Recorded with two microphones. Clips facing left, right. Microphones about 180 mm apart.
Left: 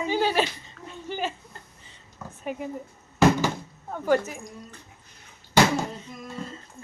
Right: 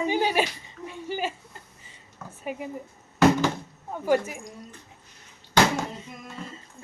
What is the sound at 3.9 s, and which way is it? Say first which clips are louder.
Speech: even; 10° right (ahead or behind).